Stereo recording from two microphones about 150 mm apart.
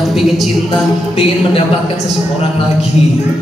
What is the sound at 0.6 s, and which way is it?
Music, 40° left (ahead or behind).